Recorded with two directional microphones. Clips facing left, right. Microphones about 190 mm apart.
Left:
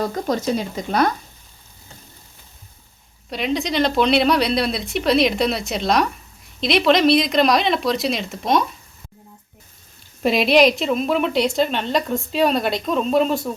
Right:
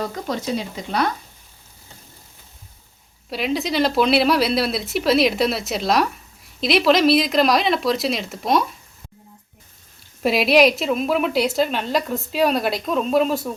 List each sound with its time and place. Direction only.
0.1 s speech: 45° left (ahead or behind)
3.2 s a woman's voice: 5° right (ahead or behind)
10.2 s a woman's voice: 5° right (ahead or behind)